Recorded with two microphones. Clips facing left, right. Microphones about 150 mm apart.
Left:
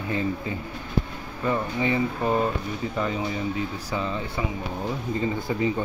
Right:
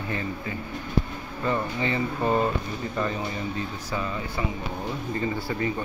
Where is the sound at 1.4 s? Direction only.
15° left (ahead or behind).